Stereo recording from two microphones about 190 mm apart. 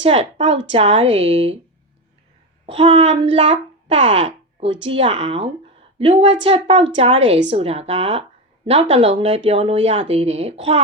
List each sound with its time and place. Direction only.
0.0 s speech: 35° right (ahead or behind)
2.6 s a child's voice: 30° right (ahead or behind)